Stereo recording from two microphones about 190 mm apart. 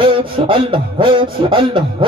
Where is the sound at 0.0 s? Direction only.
25° right (ahead or behind).